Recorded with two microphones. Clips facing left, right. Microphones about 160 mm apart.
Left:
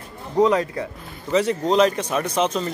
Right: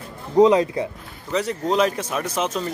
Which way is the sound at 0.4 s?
20° right (ahead or behind).